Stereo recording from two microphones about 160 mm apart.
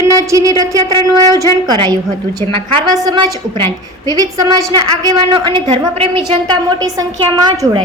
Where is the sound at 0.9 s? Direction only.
20° left (ahead or behind).